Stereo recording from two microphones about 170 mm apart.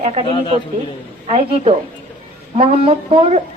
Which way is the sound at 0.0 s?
40° right (ahead or behind).